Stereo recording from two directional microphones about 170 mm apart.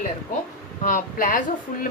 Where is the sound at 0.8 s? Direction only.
45° left (ahead or behind).